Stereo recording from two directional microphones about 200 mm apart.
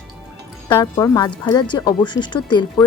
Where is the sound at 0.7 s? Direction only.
15° left (ahead or behind).